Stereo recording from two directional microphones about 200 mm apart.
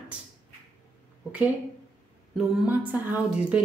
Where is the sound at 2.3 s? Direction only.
5° right (ahead or behind).